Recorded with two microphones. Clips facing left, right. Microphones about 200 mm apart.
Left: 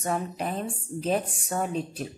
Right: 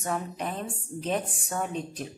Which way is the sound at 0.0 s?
30° left (ahead or behind).